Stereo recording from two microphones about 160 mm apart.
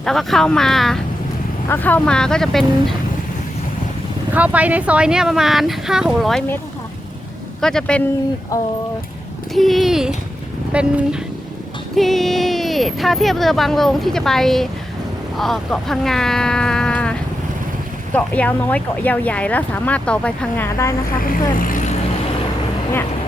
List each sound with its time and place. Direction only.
0.0 s speech: centre (ahead or behind)
4.4 s speech: 10° right (ahead or behind)
7.6 s speech: 5° left (ahead or behind)
9.6 s speech: centre (ahead or behind)
21.6 s vehicle: 55° left (ahead or behind)